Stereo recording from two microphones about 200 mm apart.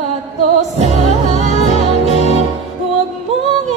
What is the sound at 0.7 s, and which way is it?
Music, 35° right (ahead or behind).